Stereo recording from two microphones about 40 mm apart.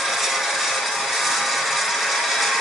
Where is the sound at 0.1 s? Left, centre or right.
Centre.